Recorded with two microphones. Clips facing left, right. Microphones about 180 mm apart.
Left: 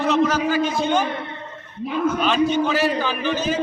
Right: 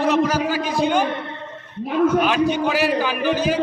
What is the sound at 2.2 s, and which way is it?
A man's voice, 10° right (ahead or behind).